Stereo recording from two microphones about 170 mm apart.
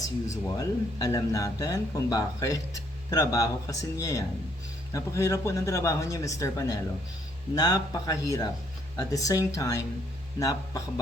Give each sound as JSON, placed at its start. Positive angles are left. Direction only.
{"t": 0.4, "sound": "speech", "side_deg": 20}